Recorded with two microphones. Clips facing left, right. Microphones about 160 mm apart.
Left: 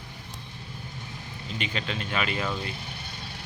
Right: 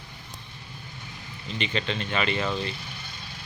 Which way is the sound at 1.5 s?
5° left (ahead or behind).